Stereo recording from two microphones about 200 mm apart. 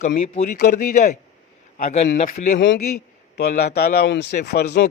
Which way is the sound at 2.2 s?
35° left (ahead or behind).